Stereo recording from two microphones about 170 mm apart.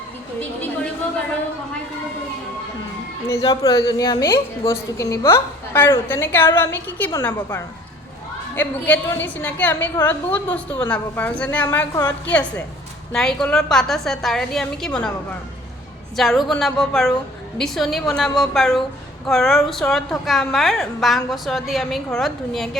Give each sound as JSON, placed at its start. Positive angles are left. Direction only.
{"t": 3.2, "sound": "a woman's voice", "side_deg": 20}
{"t": 16.1, "sound": "a woman's voice", "side_deg": 0}